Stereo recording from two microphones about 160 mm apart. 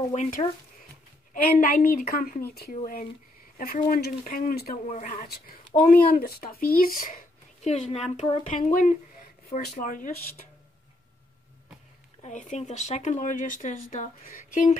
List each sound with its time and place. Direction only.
0.1 s speech: 45° left (ahead or behind)
1.3 s a woman's voice: 60° left (ahead or behind)
2.7 s speech: 55° left (ahead or behind)
4.8 s speech: 55° left (ahead or behind)
8.5 s speech: 50° left (ahead or behind)
12.2 s speech: 50° left (ahead or behind)